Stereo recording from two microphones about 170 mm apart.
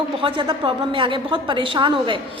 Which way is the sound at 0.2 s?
30° right (ahead or behind).